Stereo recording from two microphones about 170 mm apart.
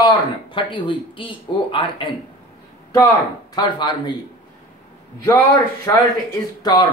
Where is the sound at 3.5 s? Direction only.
25° left (ahead or behind).